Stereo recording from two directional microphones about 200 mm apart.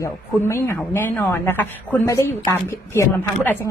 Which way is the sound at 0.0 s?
15° left (ahead or behind).